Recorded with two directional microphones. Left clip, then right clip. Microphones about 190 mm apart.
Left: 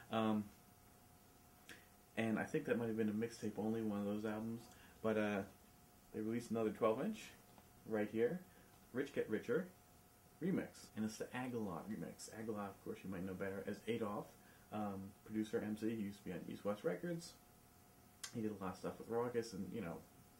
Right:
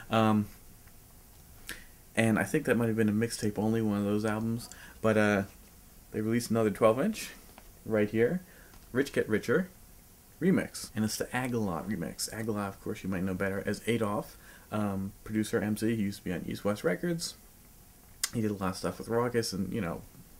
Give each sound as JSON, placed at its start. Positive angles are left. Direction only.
{"t": 0.1, "sound": "speech", "side_deg": -25}
{"t": 1.7, "sound": "speech", "side_deg": -25}
{"t": 15.3, "sound": "speech", "side_deg": -25}
{"t": 18.2, "sound": "speech", "side_deg": -25}